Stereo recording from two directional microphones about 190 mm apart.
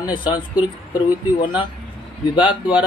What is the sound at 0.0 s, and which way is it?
Speech, 25° left (ahead or behind).